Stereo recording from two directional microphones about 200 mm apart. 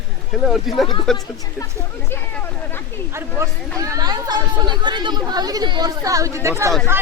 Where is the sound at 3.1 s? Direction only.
15° right (ahead or behind).